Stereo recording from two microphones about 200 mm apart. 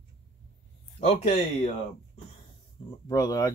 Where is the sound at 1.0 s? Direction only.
30° left (ahead or behind).